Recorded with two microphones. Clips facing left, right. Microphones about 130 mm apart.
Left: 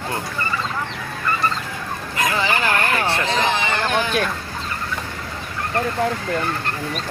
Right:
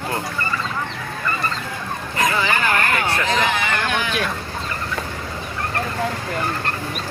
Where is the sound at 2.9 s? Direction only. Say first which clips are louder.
Even; 30° left (ahead or behind).